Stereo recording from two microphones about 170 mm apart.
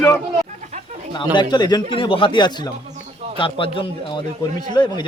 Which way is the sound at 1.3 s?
25° left (ahead or behind).